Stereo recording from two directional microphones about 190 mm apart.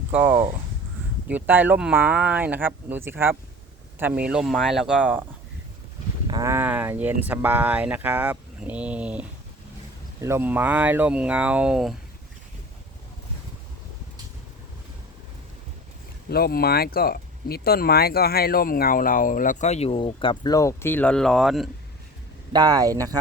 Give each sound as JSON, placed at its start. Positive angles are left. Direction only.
{"t": 0.1, "sound": "speech", "side_deg": -10}
{"t": 6.2, "sound": "speech", "side_deg": -20}
{"t": 16.3, "sound": "speech", "side_deg": 55}
{"t": 22.5, "sound": "speech", "side_deg": -20}